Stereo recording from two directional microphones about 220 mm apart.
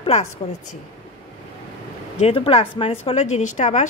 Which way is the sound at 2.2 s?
25° left (ahead or behind).